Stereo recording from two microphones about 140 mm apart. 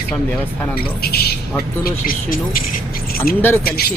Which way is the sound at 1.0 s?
90° left.